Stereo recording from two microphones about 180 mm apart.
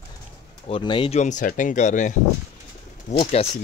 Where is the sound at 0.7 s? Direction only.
25° left (ahead or behind).